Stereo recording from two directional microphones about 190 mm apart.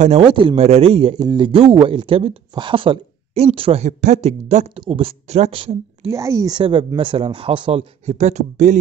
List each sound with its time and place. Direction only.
0.0 s a man's voice: 30° right (ahead or behind)
6.0 s a man's voice: 15° right (ahead or behind); by 8.7 s 40° right (ahead or behind)